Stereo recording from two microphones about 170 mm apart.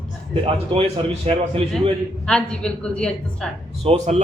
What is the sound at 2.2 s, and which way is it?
Speech, 5° left (ahead or behind).